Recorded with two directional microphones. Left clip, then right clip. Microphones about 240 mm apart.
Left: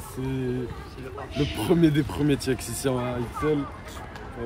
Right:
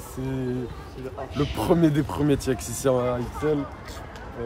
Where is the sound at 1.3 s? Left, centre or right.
Right.